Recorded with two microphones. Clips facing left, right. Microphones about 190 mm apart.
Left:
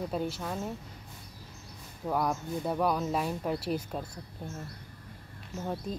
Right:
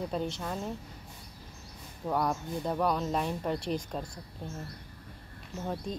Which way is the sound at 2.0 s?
5° left (ahead or behind).